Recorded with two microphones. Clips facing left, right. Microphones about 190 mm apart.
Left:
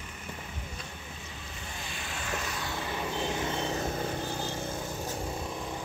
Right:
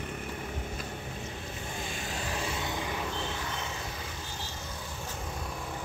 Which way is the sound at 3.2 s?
20° left (ahead or behind).